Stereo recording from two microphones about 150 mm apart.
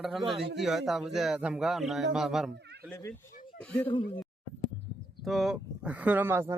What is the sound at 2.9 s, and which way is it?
Speech, 20° left (ahead or behind).